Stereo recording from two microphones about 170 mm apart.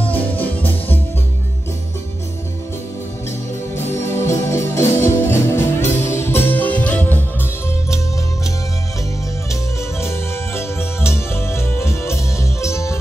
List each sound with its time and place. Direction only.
0.0 s music: 10° left (ahead or behind)
3.7 s music: 15° left (ahead or behind)
9.5 s music: 15° left (ahead or behind)